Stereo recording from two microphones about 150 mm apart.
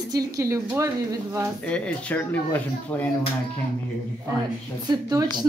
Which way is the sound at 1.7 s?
10° left (ahead or behind).